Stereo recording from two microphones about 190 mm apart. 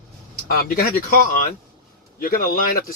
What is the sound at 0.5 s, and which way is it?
Speech, 50° left (ahead or behind).